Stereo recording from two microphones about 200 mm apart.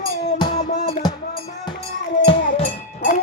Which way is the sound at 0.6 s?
35° left (ahead or behind).